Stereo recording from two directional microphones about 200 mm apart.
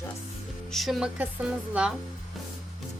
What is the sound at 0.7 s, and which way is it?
Music, centre (ahead or behind).